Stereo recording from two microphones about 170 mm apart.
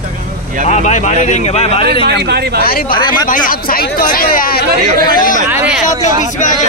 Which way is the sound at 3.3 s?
55° left (ahead or behind).